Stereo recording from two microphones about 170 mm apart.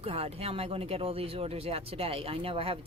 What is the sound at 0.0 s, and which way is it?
Speech, 35° right (ahead or behind).